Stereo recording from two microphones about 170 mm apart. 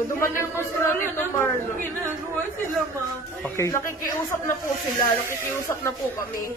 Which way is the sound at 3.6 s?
15° left (ahead or behind).